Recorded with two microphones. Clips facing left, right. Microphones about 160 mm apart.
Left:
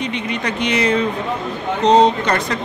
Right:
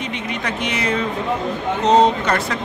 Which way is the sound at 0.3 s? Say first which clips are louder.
Left 3 dB; 5° right (ahead or behind).